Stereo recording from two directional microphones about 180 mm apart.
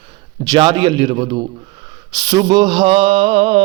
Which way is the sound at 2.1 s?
25° right (ahead or behind).